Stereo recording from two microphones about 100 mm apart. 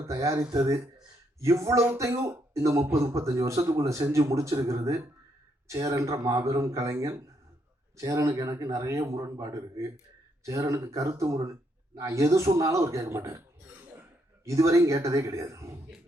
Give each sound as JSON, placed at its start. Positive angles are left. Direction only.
{"t": 0.0, "sound": "speech", "side_deg": -30}
{"t": 14.4, "sound": "speech", "side_deg": -30}